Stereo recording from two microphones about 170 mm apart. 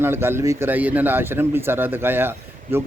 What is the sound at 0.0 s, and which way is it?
Speech, 15° right (ahead or behind).